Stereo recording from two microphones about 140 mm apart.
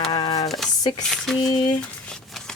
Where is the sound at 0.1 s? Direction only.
30° left (ahead or behind).